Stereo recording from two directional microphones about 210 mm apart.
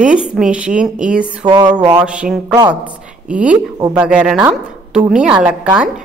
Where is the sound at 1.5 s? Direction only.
20° right (ahead or behind).